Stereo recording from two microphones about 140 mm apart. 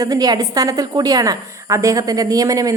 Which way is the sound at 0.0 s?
25° right (ahead or behind).